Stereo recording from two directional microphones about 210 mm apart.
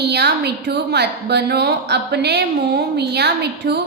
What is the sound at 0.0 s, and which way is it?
A woman's voice, 55° right (ahead or behind).